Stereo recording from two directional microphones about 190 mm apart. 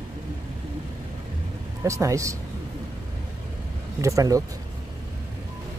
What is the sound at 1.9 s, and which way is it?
Speech, 15° right (ahead or behind).